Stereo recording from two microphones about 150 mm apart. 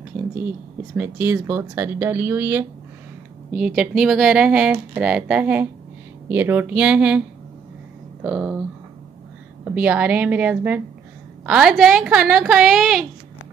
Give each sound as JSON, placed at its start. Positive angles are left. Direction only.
{"t": 0.9, "sound": "speech", "side_deg": -10}
{"t": 3.5, "sound": "speech", "side_deg": -5}
{"t": 9.7, "sound": "speech", "side_deg": -10}